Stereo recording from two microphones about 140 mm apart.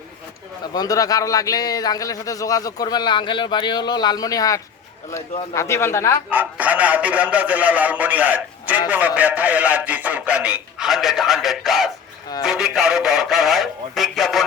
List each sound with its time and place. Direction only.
0.7 s a man's voice: 25° left (ahead or behind)
6.3 s a man's voice: 10° right (ahead or behind)